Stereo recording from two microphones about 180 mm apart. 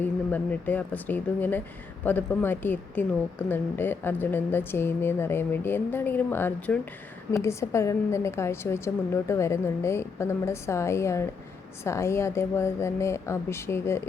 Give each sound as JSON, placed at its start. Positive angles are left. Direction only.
{"t": 0.0, "sound": "a woman's voice", "side_deg": 10}